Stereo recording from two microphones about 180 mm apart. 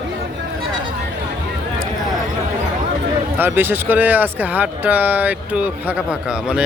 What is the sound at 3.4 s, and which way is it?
Speech, 10° right (ahead or behind).